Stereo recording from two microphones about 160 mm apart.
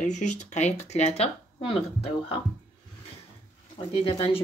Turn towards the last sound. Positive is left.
turn(degrees=35)  # may be behind; listen again after turning